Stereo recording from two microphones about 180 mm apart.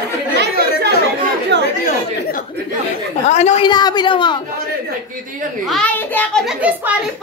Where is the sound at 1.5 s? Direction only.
70° right (ahead or behind).